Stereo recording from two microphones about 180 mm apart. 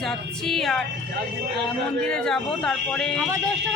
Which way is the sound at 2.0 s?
5° left (ahead or behind).